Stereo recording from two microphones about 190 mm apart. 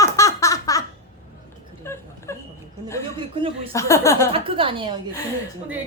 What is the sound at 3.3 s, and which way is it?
Speech, 25° right (ahead or behind).